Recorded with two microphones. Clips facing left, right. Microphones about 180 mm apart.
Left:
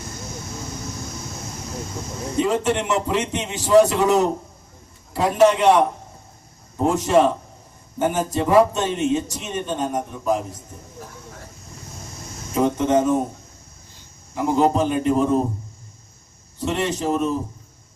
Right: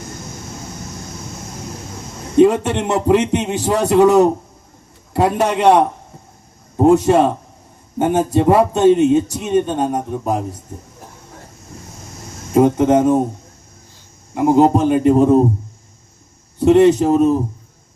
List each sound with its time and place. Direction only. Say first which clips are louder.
2.4 s a man's voice: right 8 dB; 60° right (ahead or behind)
6.8 s a man's voice: right 5 dB; 65° right (ahead or behind)
12.5 s a man's voice: right 6 dB; 60° right (ahead or behind)
14.3 s a man's voice: right 6 dB; 60° right (ahead or behind)
16.6 s a man's voice: right 13 dB; 65° right (ahead or behind)